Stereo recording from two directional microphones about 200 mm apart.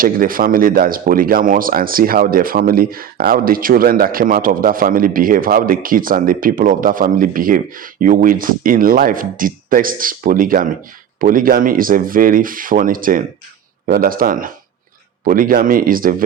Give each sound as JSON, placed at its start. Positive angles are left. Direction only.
{"t": 0.0, "sound": "speech", "side_deg": -45}